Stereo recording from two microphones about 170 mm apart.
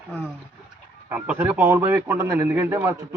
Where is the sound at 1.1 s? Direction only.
10° right (ahead or behind).